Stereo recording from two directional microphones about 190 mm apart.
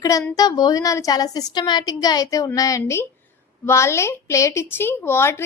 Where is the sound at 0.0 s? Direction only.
15° left (ahead or behind).